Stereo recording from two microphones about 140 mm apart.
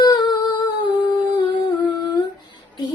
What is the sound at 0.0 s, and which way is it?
Humming, 30° left (ahead or behind).